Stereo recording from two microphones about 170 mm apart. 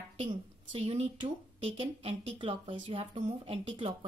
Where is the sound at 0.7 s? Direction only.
35° right (ahead or behind).